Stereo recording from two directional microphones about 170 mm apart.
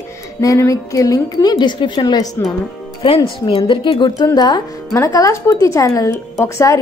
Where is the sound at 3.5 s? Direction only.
30° left (ahead or behind).